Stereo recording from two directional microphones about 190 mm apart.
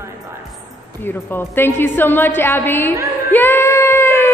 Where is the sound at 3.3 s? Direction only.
10° left (ahead or behind).